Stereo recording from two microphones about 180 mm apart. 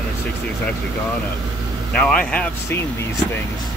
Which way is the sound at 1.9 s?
5° left (ahead or behind).